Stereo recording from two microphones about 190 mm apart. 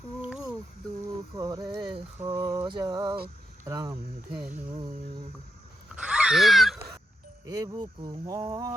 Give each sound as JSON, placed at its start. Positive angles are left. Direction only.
{"t": 0.2, "sound": "a sound", "side_deg": -5}
{"t": 1.4, "sound": "speech", "side_deg": -20}
{"t": 4.3, "sound": "speech", "side_deg": -10}
{"t": 5.9, "sound": "wheeze", "side_deg": -5}
{"t": 7.4, "sound": "speech", "side_deg": -20}